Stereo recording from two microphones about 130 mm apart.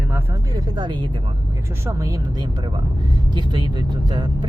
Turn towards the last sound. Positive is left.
turn(degrees=-35)  # may be behind; listen again after turning